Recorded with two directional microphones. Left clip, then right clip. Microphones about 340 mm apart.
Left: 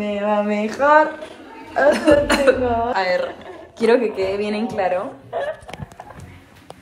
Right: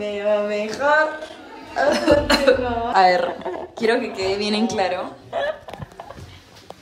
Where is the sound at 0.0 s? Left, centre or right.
Centre.